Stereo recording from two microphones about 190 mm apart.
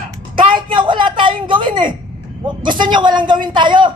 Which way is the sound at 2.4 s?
25° right (ahead or behind).